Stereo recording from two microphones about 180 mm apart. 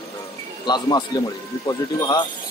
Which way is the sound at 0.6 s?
25° left (ahead or behind).